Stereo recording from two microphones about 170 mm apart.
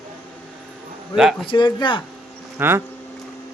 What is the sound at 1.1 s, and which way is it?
Speech, 5° right (ahead or behind).